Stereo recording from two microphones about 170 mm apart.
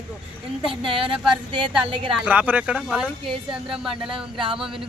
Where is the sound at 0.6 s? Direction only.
30° right (ahead or behind).